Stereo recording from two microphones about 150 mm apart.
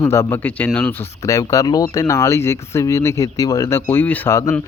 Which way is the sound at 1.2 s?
20° left (ahead or behind).